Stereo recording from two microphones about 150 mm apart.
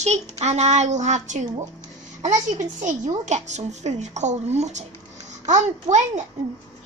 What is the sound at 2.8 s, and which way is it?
A woman's voice, 50° right (ahead or behind).